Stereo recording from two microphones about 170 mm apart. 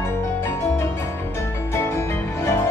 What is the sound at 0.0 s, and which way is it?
Music, 15° left (ahead or behind).